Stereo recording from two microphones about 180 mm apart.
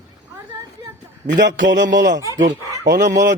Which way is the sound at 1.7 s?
80° right.